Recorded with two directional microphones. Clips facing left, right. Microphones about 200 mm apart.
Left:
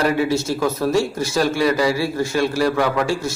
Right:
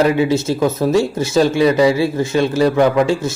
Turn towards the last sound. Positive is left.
turn(degrees=-20)  # may be behind; listen again after turning